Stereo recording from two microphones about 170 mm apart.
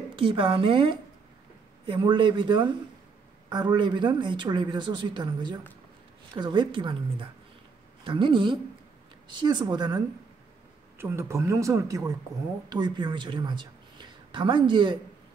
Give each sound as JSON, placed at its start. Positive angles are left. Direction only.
{"t": 0.1, "sound": "speech", "side_deg": -30}
{"t": 11.0, "sound": "a woman's voice", "side_deg": -15}